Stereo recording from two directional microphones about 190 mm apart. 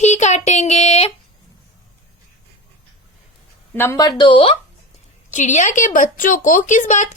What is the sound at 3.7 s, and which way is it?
Speech, 15° left (ahead or behind).